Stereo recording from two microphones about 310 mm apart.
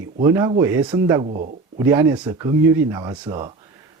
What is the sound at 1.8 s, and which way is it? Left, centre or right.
Speech, centre.